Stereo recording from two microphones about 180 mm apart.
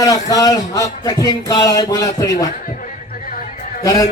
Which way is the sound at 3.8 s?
20° left (ahead or behind).